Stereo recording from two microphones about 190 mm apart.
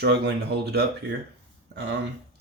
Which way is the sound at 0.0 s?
60° right (ahead or behind).